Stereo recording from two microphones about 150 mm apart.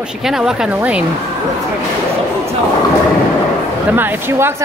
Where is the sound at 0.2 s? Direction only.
5° right (ahead or behind).